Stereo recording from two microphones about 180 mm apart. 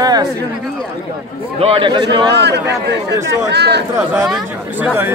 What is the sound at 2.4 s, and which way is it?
Speech, 70° right (ahead or behind).